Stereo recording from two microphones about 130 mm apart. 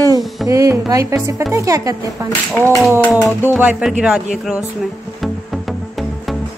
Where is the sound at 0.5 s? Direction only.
25° right (ahead or behind).